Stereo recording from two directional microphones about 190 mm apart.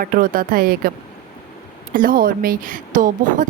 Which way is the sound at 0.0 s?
50° right (ahead or behind).